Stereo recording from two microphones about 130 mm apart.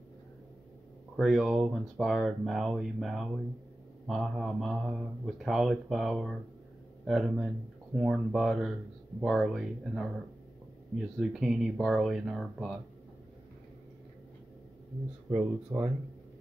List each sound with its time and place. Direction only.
1.1 s speech: centre (ahead or behind)
11.1 s speech: centre (ahead or behind)
15.2 s speech: 15° right (ahead or behind)